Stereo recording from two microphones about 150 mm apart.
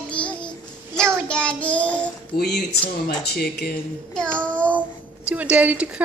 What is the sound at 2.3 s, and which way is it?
Speech, 90° left.